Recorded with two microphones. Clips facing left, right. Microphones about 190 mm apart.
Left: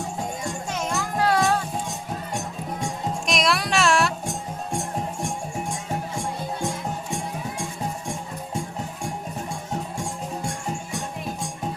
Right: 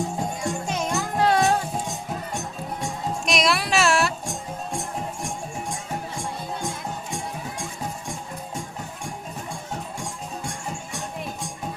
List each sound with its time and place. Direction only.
0.7 s music: 20° right (ahead or behind)
3.2 s music: centre (ahead or behind)